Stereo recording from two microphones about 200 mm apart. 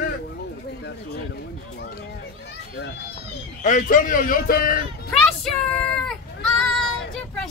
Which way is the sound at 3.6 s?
40° left (ahead or behind).